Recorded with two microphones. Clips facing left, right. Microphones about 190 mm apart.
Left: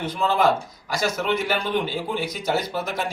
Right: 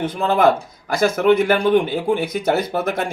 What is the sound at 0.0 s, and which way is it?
Speech, 55° right (ahead or behind).